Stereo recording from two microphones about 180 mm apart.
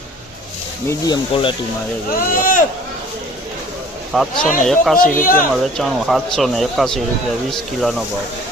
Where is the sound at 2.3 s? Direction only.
50° left (ahead or behind).